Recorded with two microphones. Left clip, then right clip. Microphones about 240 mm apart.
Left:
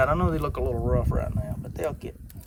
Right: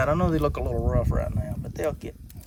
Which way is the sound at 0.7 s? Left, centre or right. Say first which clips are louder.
Even; right.